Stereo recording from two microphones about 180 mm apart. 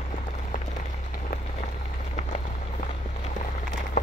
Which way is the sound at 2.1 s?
40° left (ahead or behind).